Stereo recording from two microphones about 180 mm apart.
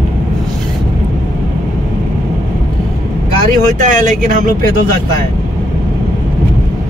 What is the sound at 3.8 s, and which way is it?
Speech, 50° right (ahead or behind).